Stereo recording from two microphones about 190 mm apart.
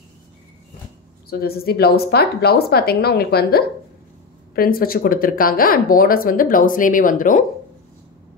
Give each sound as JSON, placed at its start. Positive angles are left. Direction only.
{"t": 1.4, "sound": "a woman's voice", "side_deg": 55}